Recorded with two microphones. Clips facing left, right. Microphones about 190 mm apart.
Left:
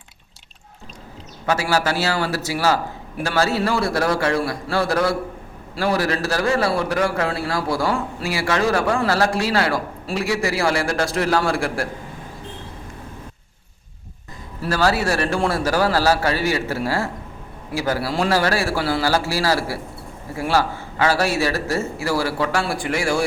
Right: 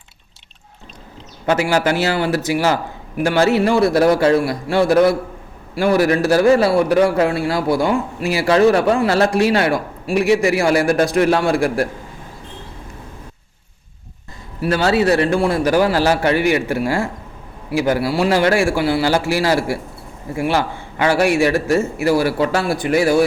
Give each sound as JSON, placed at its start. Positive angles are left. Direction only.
{"t": 1.5, "sound": "a man's voice", "side_deg": -20}
{"t": 14.6, "sound": "a man's voice", "side_deg": -20}